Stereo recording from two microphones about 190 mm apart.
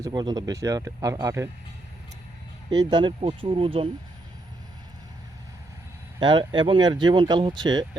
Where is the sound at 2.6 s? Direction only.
25° right (ahead or behind).